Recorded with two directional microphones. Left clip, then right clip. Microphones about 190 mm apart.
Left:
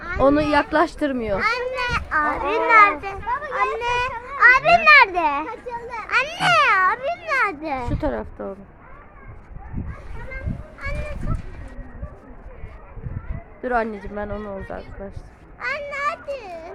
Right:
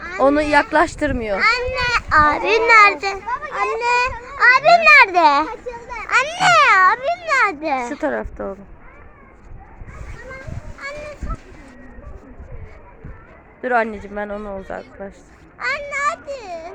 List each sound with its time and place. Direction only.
0.2 s speech: 5° left (ahead or behind)
1.4 s children playing: 20° right (ahead or behind); by 2.6 s 40° right (ahead or behind)
2.6 s a child's voice: 40° right (ahead or behind)
3.5 s a child's voice: 25° right (ahead or behind); by 5.5 s 40° right (ahead or behind)
5.5 s children playing: 35° right (ahead or behind)
8.0 s a woman's voice: 5° right (ahead or behind)
10.8 s goose: 25° right (ahead or behind)
13.6 s speech: 5° right (ahead or behind)
15.5 s a sound: 30° right (ahead or behind)